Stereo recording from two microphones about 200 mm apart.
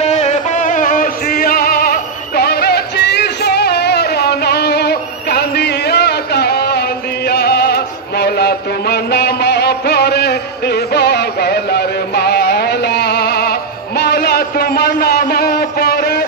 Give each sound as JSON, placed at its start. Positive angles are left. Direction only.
{"t": 0.0, "sound": "music", "side_deg": 35}
{"t": 7.2, "sound": "chant", "side_deg": 55}